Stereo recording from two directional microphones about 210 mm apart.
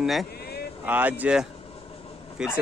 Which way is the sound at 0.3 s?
50° left (ahead or behind).